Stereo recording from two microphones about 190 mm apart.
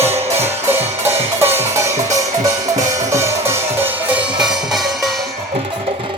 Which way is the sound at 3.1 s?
15° right (ahead or behind).